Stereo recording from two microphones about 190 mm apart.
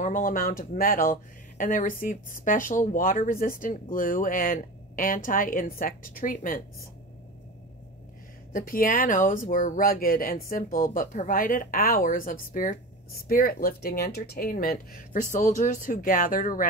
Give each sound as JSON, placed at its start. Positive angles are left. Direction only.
{"t": 0.0, "sound": "speech", "side_deg": 45}
{"t": 8.5, "sound": "speech", "side_deg": 45}